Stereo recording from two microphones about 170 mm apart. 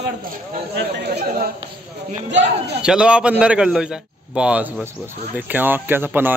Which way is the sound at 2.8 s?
5° right (ahead or behind).